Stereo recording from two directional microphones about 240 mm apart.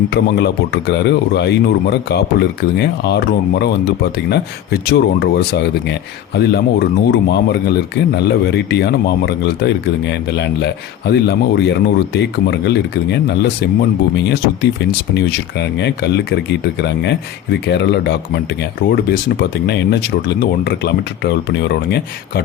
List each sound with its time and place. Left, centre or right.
0.1 s speech: left
15.1 s speech: left